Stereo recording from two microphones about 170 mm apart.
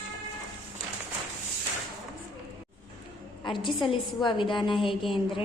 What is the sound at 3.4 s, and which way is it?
A woman's voice, 30° left (ahead or behind).